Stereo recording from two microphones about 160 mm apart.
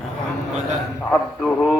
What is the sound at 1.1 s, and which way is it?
Speech, 5° left (ahead or behind).